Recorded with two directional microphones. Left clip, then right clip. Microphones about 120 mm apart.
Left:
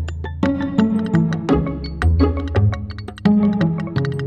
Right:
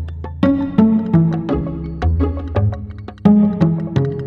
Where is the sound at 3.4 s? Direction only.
Centre (ahead or behind).